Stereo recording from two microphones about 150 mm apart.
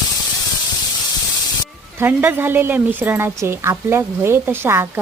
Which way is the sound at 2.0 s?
15° right (ahead or behind).